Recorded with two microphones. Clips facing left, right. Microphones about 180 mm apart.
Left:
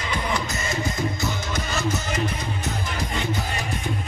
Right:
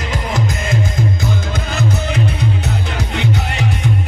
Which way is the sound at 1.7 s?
60° right (ahead or behind).